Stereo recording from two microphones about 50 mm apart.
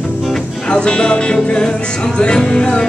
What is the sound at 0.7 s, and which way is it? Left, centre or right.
Music, centre.